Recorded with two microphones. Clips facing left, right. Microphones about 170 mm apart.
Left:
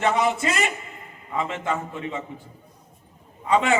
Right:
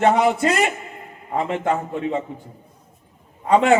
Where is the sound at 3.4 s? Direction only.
55° right (ahead or behind).